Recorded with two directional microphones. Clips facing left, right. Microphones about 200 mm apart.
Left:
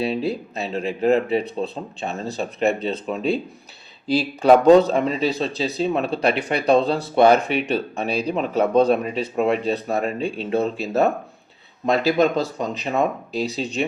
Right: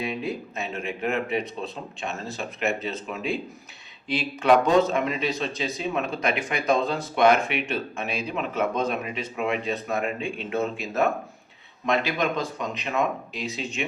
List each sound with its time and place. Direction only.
0.0 s speech: 35° left (ahead or behind)